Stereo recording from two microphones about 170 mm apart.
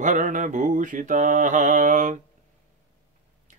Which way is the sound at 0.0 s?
50° right (ahead or behind).